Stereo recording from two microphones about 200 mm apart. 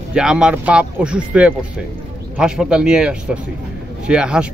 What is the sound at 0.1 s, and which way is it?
Speech, 5° right (ahead or behind).